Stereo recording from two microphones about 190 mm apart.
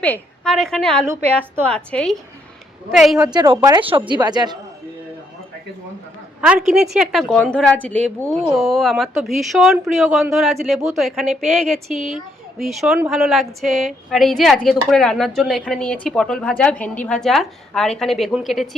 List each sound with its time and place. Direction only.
0.0 s a woman's voice: 5° left (ahead or behind)
1.0 s a woman's voice: 15° right (ahead or behind)
1.6 s a woman's voice: 5° left (ahead or behind)
3.5 s a woman's voice: 25° right (ahead or behind)
6.4 s a woman's voice: 5° right (ahead or behind)